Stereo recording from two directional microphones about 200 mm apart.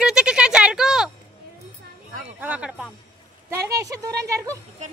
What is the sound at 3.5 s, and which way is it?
Speech, 15° right (ahead or behind).